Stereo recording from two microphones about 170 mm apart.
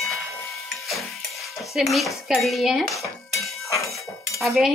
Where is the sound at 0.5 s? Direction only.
Centre (ahead or behind).